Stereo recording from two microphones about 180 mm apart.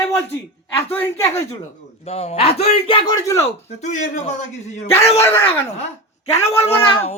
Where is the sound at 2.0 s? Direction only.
35° left (ahead or behind).